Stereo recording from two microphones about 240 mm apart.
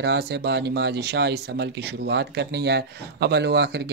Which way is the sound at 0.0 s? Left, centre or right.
Right.